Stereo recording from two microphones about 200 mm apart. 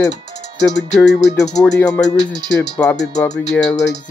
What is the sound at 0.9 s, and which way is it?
Music, centre (ahead or behind).